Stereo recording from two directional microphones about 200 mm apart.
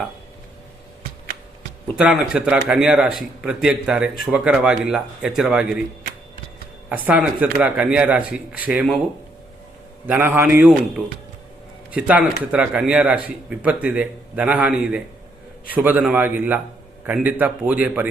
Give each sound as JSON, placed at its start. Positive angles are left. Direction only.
{"t": 2.0, "sound": "a man's voice", "side_deg": -5}
{"t": 6.9, "sound": "speech", "side_deg": -5}
{"t": 10.1, "sound": "a man's voice", "side_deg": -10}